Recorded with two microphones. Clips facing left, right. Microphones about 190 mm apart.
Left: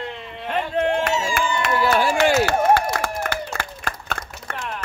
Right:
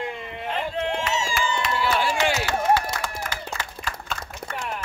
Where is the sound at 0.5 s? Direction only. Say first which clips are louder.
Left 6 dB; 55° left (ahead or behind).